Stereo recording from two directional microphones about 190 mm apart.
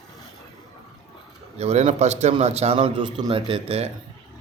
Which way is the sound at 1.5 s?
35° right (ahead or behind).